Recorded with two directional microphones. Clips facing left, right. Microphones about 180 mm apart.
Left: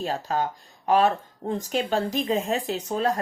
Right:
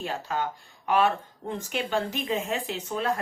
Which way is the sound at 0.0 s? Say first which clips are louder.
Left 4 dB; 40° left (ahead or behind).